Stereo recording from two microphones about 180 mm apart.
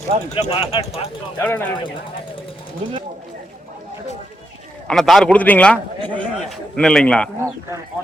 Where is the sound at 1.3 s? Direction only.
10° left (ahead or behind).